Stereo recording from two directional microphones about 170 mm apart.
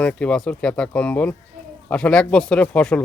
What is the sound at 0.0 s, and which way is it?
Speech, 5° left (ahead or behind).